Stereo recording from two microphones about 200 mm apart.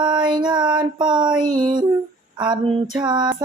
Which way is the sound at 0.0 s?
25° right (ahead or behind).